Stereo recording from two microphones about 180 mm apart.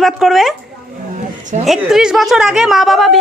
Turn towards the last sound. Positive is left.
turn(degrees=0)  # may be behind; listen again after turning